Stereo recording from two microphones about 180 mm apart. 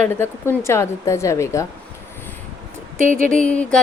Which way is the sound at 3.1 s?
45° right (ahead or behind).